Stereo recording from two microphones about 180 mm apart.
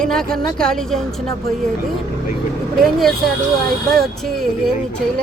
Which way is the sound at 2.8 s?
Centre (ahead or behind).